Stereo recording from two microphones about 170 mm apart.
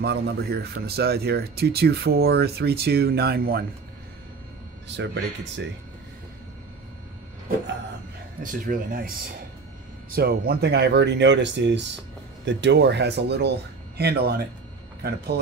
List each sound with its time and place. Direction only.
0.0 s speech: 70° right (ahead or behind)
4.9 s speech: 90° right
8.4 s speech: 55° right (ahead or behind)
10.1 s speech: 70° right (ahead or behind)